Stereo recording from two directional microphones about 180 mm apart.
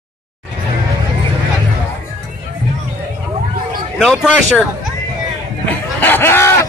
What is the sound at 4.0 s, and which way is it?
Speech, centre (ahead or behind).